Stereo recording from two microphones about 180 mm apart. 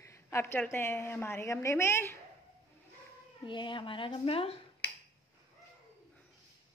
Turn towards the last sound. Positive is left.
turn(degrees=70)  # may be behind; listen again after turning